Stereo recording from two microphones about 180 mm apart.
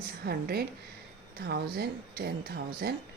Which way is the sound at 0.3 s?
55° right (ahead or behind).